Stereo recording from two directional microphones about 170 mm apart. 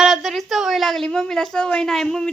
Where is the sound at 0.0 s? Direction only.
Centre (ahead or behind).